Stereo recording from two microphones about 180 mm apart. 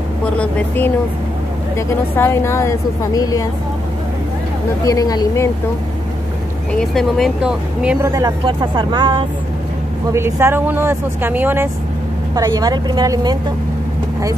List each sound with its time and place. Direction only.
0.2 s a woman's voice: 5° left (ahead or behind)
4.8 s speech: 20° left (ahead or behind)
6.7 s speech: 5° left (ahead or behind)
8.0 s speech: 20° right (ahead or behind)
10.1 s speech: 15° right (ahead or behind)